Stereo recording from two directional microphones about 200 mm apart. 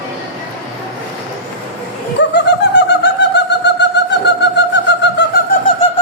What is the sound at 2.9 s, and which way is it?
Bird, 60° left (ahead or behind).